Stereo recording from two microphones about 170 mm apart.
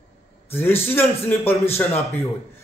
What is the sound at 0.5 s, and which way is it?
A man's voice, 15° left (ahead or behind).